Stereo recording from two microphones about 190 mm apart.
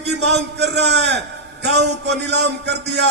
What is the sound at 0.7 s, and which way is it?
A man's voice, 60° right (ahead or behind).